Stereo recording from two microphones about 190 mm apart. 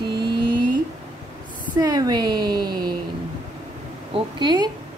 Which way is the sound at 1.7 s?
20° right (ahead or behind).